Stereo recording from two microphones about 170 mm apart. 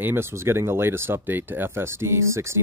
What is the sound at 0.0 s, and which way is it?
Speech, 15° right (ahead or behind).